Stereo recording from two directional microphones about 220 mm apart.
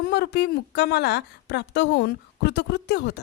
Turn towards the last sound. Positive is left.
turn(degrees=50)  # may be behind; listen again after turning